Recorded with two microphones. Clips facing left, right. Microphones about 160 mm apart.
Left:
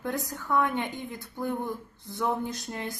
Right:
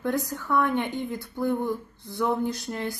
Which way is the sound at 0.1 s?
20° left (ahead or behind).